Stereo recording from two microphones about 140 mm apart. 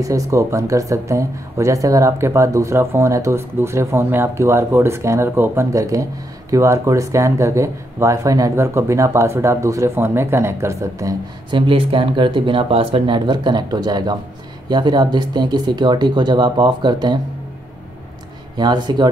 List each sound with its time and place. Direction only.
0.0 s speech: 25° right (ahead or behind)
11.5 s speech: 35° right (ahead or behind)
18.6 s speech: 30° right (ahead or behind)